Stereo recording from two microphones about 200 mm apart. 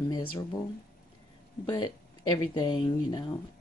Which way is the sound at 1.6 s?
20° left (ahead or behind).